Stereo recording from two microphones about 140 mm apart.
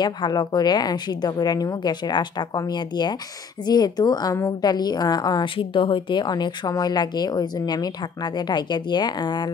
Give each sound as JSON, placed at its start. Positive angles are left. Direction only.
{"t": 0.0, "sound": "a woman's voice", "side_deg": 30}